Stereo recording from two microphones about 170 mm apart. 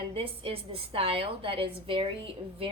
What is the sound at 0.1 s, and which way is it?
A woman's voice, 35° right (ahead or behind).